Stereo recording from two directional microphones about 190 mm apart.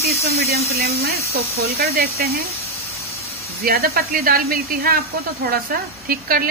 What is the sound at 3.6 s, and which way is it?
A woman's voice, 50° right (ahead or behind).